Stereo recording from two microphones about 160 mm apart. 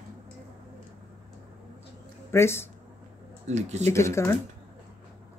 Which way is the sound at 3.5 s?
45° right (ahead or behind).